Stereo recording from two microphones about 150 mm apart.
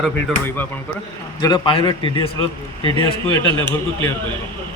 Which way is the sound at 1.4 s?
30° left (ahead or behind).